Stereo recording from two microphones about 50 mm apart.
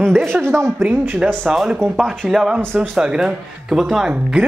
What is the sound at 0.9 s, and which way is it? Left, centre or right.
Speech, right.